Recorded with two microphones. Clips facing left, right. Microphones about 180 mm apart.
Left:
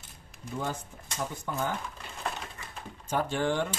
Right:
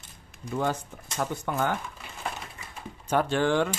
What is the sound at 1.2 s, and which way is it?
Speech, 65° right (ahead or behind).